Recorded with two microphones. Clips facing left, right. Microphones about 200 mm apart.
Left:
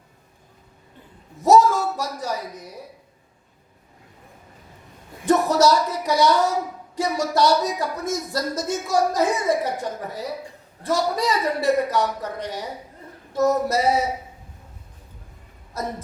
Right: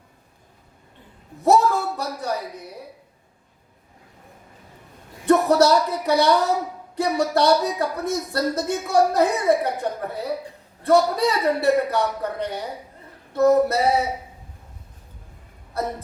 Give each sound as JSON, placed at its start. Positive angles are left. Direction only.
{"t": 1.4, "sound": "a man's voice", "side_deg": -60}
{"t": 5.2, "sound": "a woman's voice", "side_deg": -60}
{"t": 15.7, "sound": "speech", "side_deg": -60}